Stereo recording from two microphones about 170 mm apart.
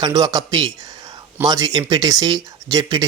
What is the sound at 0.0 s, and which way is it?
Speech, 20° right (ahead or behind).